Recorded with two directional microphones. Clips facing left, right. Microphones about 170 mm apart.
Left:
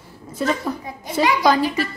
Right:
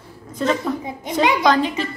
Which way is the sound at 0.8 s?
20° right (ahead or behind).